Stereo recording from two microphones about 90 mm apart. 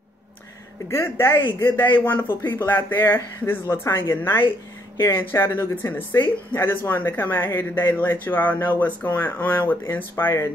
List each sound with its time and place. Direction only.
0.8 s speech: 30° left (ahead or behind)